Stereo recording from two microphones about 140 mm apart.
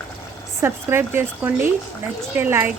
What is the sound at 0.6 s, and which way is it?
Speech, 15° right (ahead or behind).